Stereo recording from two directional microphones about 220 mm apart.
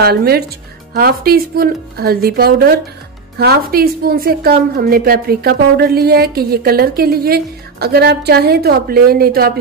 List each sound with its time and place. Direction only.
0.0 s a woman's voice: 45° right (ahead or behind)